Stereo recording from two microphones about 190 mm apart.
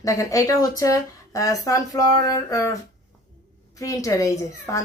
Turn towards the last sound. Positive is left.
turn(degrees=15)  # may be behind; listen again after turning